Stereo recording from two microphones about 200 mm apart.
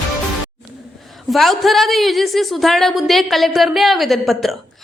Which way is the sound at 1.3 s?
Centre (ahead or behind).